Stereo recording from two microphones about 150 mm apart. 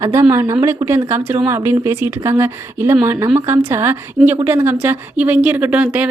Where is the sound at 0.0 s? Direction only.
20° right (ahead or behind).